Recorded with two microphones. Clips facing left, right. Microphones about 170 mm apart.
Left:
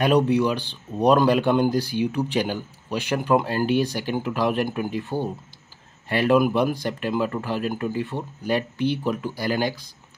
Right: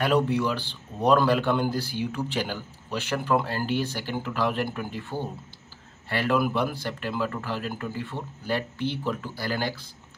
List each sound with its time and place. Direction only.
0.0 s speech: 15° left (ahead or behind)